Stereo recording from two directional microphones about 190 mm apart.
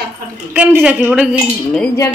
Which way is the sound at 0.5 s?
5° right (ahead or behind).